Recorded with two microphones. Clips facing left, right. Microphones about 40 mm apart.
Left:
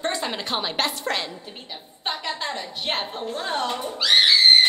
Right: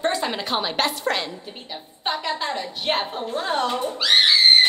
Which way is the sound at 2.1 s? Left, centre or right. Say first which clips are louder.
Right 3 dB; centre.